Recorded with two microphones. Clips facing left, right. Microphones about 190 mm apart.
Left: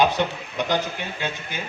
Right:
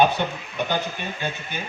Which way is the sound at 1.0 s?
90° left.